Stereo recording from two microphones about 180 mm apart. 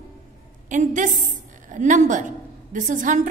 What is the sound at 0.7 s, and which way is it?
A woman's voice, 45° right (ahead or behind).